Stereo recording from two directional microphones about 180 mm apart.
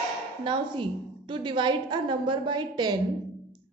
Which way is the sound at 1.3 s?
25° right (ahead or behind).